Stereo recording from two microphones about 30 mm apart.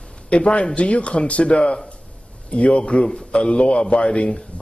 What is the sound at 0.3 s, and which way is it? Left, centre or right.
A man's voice, left.